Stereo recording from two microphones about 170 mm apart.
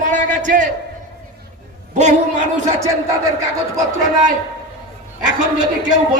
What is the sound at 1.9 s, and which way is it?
Speech, 45° right (ahead or behind).